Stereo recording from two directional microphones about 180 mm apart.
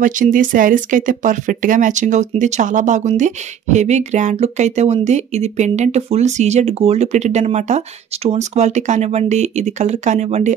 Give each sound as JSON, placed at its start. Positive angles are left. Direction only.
{"t": 0.0, "sound": "speech", "side_deg": -45}